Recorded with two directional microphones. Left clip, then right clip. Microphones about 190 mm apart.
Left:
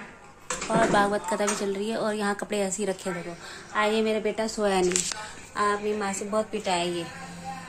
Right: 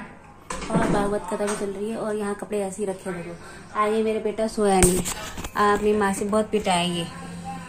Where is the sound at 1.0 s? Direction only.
45° left (ahead or behind).